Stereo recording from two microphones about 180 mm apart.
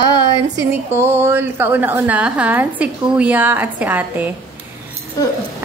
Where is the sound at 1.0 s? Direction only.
15° right (ahead or behind).